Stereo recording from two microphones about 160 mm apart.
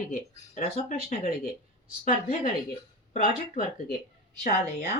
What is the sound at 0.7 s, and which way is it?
A woman's voice, 50° left (ahead or behind).